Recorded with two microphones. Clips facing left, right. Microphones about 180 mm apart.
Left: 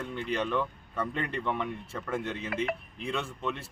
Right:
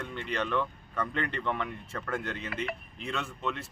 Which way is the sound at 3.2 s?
30° left (ahead or behind).